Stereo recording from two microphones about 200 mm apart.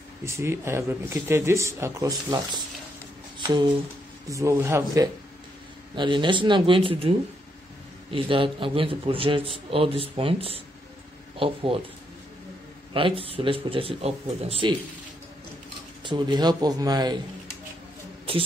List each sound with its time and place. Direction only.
0.2 s speech: 15° right (ahead or behind)
3.3 s a sound: 20° right (ahead or behind)
4.3 s a man's voice: 15° right (ahead or behind)
12.9 s a man's voice: 25° right (ahead or behind)
16.0 s a man's voice: 25° right (ahead or behind)
18.3 s a sound: 25° right (ahead or behind)